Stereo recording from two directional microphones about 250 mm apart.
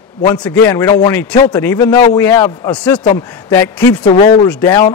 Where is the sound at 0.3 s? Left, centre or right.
Centre.